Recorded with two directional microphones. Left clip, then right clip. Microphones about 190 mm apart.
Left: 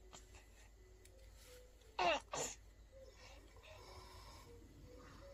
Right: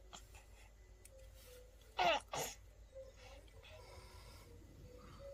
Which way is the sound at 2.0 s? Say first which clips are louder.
Right 2 dB; 10° right (ahead or behind).